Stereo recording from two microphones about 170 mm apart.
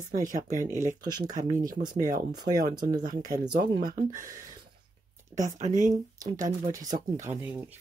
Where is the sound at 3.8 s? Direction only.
55° right (ahead or behind).